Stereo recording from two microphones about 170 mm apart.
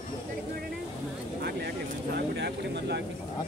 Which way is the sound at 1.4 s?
70° right (ahead or behind).